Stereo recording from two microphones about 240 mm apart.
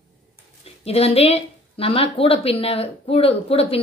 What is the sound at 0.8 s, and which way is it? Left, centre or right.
Speech, left.